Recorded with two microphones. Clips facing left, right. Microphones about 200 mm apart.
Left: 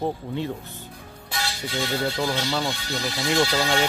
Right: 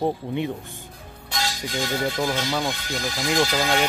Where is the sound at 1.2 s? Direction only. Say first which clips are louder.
Right 2 dB; 5° left (ahead or behind).